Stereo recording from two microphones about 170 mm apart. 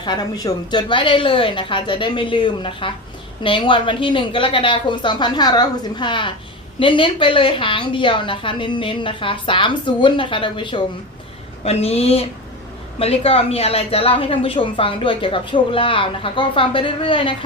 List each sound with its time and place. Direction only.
0.0 s a woman's voice: 25° left (ahead or behind)